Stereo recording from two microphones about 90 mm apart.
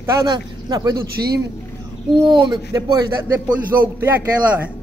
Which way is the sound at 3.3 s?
20° right (ahead or behind).